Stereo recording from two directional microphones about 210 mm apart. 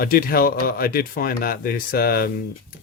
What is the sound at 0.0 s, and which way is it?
Speech, 45° left (ahead or behind).